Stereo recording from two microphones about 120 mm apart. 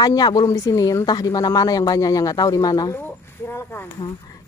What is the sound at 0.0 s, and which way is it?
Speech, 30° left (ahead or behind).